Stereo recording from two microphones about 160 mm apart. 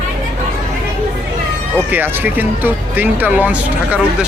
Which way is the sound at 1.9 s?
10° right (ahead or behind).